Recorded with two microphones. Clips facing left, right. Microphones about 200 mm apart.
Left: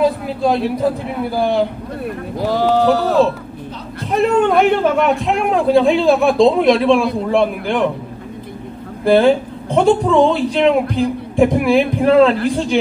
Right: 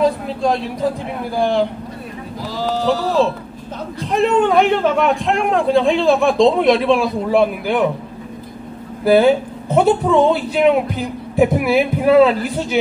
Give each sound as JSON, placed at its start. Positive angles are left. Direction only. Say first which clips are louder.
{"t": 0.0, "sound": "a sound", "louder": "left 1 dB", "side_deg": 5}
{"t": 1.3, "sound": "a man's voice", "louder": "even", "side_deg": 5}
{"t": 2.3, "sound": "speech", "louder": "left 7 dB", "side_deg": 60}
{"t": 4.1, "sound": "a man's voice", "louder": "left 1 dB", "side_deg": 5}
{"t": 9.0, "sound": "a man's voice", "louder": "even", "side_deg": -5}